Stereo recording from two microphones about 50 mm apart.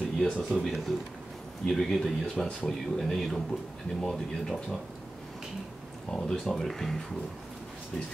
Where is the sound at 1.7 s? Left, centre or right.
Centre.